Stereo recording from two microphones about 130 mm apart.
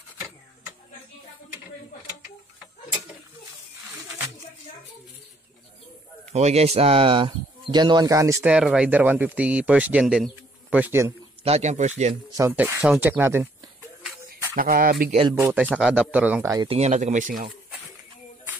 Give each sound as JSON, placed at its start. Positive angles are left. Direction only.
{"t": 6.3, "sound": "speech", "side_deg": -55}
{"t": 8.5, "sound": "speech", "side_deg": -10}
{"t": 11.4, "sound": "speech", "side_deg": -60}
{"t": 12.4, "sound": "speech", "side_deg": -20}
{"t": 12.8, "sound": "speech", "side_deg": -10}
{"t": 14.6, "sound": "speech", "side_deg": -90}
{"t": 15.5, "sound": "speech", "side_deg": -10}
{"t": 16.6, "sound": "speech", "side_deg": -55}